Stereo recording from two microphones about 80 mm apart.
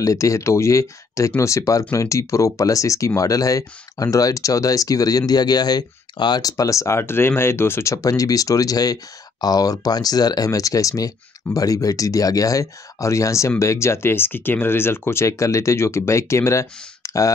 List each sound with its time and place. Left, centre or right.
0.0 s speech: left
6.4 s speech: left
7.9 s speech: left